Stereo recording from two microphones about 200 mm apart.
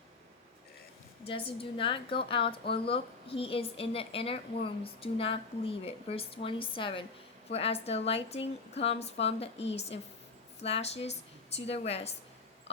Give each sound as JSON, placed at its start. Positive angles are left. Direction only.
{"t": 1.2, "sound": "a woman's voice", "side_deg": 25}
{"t": 10.6, "sound": "a woman's voice", "side_deg": 30}